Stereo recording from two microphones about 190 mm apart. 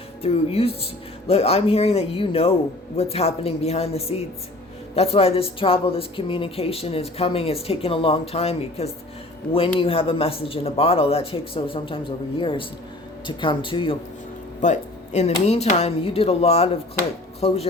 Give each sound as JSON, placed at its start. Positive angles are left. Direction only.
{"t": 0.2, "sound": "speech", "side_deg": 30}
{"t": 14.6, "sound": "speech", "side_deg": 35}